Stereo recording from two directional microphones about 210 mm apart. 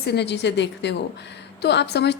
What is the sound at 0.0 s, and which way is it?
Speech, 50° left (ahead or behind).